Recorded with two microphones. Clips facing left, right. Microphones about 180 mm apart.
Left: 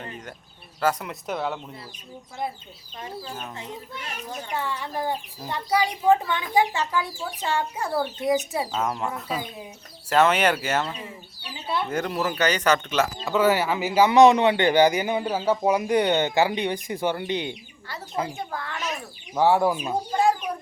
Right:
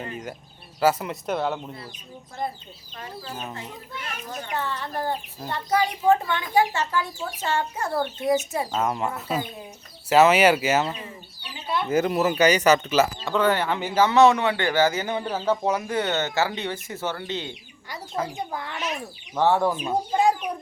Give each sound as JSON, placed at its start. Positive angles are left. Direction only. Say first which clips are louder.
{"t": 0.0, "sound": "speech", "louder": "right 4 dB", "side_deg": -10}
{"t": 18.3, "sound": "speech", "louder": "right 1 dB", "side_deg": -20}
{"t": 19.3, "sound": "speech", "louder": "left 1 dB", "side_deg": 10}